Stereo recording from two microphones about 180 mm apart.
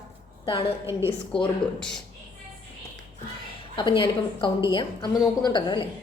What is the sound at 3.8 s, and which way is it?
A woman's voice, 25° left (ahead or behind).